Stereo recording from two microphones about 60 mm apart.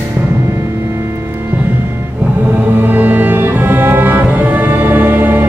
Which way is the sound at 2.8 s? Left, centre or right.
Right.